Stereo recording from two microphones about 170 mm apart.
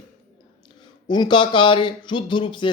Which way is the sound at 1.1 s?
25° left (ahead or behind).